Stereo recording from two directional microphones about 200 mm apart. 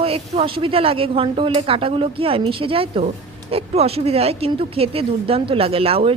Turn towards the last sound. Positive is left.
turn(degrees=-30)  # may be behind; listen again after turning